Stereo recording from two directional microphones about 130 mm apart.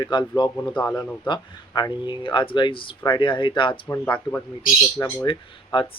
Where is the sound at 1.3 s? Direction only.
35° left (ahead or behind).